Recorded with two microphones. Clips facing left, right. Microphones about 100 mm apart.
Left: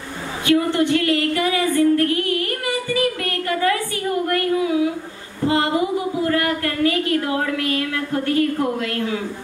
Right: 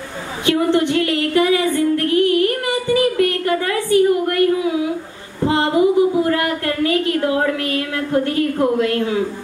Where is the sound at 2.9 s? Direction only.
25° right (ahead or behind).